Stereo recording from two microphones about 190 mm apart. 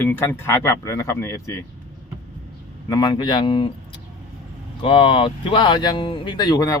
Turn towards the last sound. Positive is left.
turn(degrees=20)  # may be behind; listen again after turning